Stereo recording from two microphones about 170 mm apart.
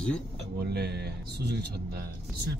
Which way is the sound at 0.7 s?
70° right (ahead or behind).